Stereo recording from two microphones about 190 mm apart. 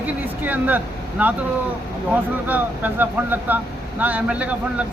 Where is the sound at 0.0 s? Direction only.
10° right (ahead or behind).